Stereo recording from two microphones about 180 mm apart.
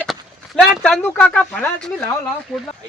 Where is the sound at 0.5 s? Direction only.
5° left (ahead or behind).